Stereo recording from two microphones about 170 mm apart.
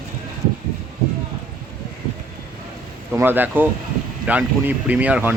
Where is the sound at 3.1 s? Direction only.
10° right (ahead or behind).